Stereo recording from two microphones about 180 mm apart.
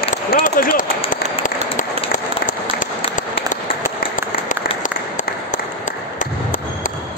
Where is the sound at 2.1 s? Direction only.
45° left (ahead or behind).